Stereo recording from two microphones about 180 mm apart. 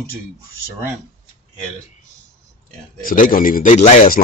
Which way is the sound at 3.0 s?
50° left (ahead or behind).